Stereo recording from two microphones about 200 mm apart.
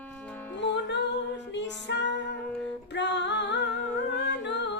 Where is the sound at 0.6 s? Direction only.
60° left (ahead or behind).